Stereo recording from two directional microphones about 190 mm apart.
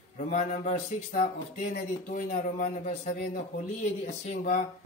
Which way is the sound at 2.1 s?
40° left (ahead or behind).